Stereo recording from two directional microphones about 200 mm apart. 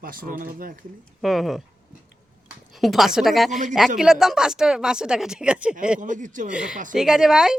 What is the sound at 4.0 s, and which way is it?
Speech, centre (ahead or behind).